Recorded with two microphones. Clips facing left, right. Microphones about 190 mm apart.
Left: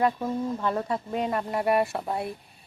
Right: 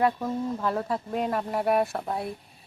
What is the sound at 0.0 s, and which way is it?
Speech, centre (ahead or behind).